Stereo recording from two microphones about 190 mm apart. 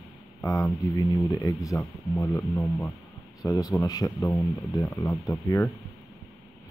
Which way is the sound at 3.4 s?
20° left (ahead or behind).